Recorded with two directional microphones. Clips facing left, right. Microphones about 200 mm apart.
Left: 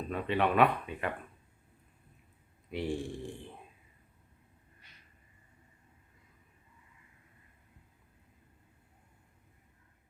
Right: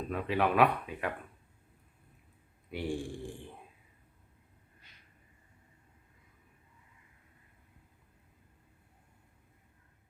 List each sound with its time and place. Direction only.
0.1 s speech: centre (ahead or behind)
2.6 s speech: centre (ahead or behind)